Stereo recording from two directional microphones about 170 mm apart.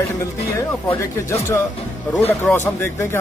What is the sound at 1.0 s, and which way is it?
Speech, 15° left (ahead or behind).